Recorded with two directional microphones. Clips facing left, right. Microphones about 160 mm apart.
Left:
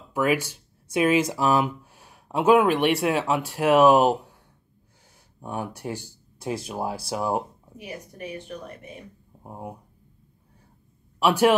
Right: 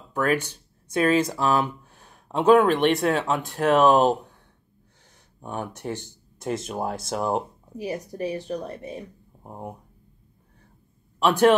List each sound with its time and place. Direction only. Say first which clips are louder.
0.1 s speech: even; 10° left (ahead or behind)
5.4 s speech: even; 5° left (ahead or behind)
7.7 s a woman's voice: right 8 dB; 35° right (ahead or behind)
9.4 s speech: even; 5° left (ahead or behind)
11.1 s a man's voice: right 1 dB; 10° left (ahead or behind)